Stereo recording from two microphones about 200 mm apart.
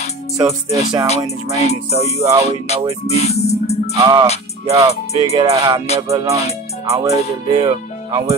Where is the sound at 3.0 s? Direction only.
30° left (ahead or behind).